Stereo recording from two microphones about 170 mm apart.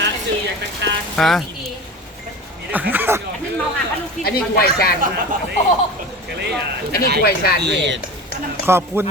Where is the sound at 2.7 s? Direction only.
10° right (ahead or behind).